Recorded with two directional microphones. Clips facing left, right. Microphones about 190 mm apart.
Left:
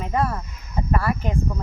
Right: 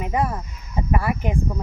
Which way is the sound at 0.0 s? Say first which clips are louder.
Even; 15° right (ahead or behind).